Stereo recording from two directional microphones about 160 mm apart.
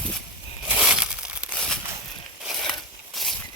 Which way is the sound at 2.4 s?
Centre (ahead or behind).